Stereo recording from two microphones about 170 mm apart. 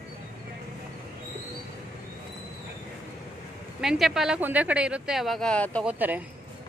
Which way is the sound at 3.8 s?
5° right (ahead or behind).